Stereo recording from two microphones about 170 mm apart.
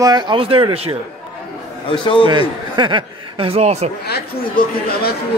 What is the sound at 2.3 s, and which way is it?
Speech, 25° right (ahead or behind).